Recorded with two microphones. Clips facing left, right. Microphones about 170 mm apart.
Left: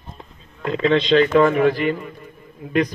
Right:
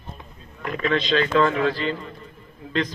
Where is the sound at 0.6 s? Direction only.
25° left (ahead or behind).